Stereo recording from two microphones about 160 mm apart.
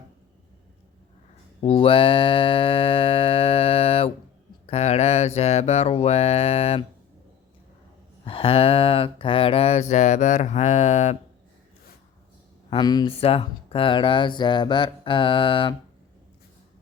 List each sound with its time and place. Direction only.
1.6 s music: 35° left (ahead or behind)
4.6 s mantra: 40° left (ahead or behind)
8.2 s a sound: 35° left (ahead or behind)
9.9 s speech: 50° left (ahead or behind)
12.7 s speech: 25° left (ahead or behind)